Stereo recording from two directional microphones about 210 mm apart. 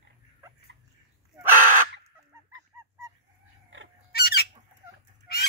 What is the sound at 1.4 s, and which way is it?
Crow, 10° right (ahead or behind).